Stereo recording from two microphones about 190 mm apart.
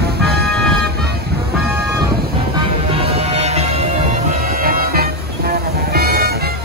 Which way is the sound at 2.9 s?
30° right (ahead or behind).